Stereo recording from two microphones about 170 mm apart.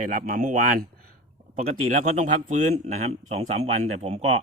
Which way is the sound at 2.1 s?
45° right (ahead or behind).